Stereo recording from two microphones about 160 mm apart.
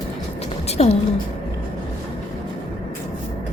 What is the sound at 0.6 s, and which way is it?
Music, 40° left (ahead or behind).